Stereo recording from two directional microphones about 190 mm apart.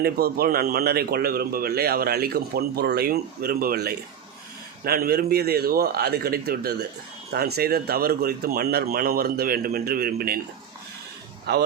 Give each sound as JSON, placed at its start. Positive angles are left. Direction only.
{"t": 0.0, "sound": "a man's voice", "side_deg": -55}
{"t": 11.5, "sound": "speech", "side_deg": -60}